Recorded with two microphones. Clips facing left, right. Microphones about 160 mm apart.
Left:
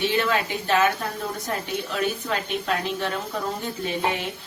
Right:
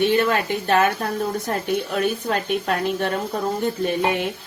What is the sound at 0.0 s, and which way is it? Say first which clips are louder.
A woman's voice: right 4 dB; 50° right (ahead or behind).